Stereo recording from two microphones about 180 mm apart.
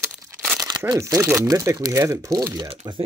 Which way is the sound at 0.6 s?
20° right (ahead or behind).